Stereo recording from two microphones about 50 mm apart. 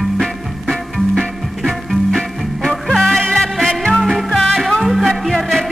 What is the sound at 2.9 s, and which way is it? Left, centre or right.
Music, centre.